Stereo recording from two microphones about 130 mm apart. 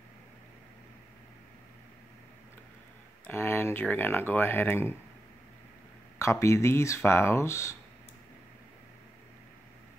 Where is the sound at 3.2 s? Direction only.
20° left (ahead or behind).